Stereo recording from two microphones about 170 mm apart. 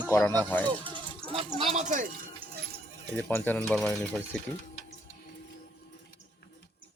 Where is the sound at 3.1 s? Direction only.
10° left (ahead or behind).